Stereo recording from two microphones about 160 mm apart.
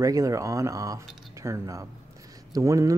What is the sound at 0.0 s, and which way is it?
Speech, 20° right (ahead or behind).